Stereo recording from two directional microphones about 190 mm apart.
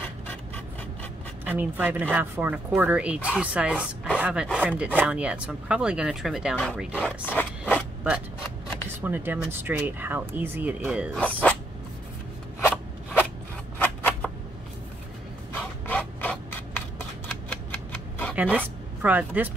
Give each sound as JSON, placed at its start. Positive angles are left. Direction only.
{"t": 1.4, "sound": "speech", "side_deg": -10}
{"t": 9.0, "sound": "speech", "side_deg": -10}
{"t": 11.1, "sound": "speech", "side_deg": 5}
{"t": 12.6, "sound": "scissors", "side_deg": 10}
{"t": 15.5, "sound": "rub", "side_deg": 10}
{"t": 18.3, "sound": "a sound", "side_deg": -5}
{"t": 19.0, "sound": "speech", "side_deg": -10}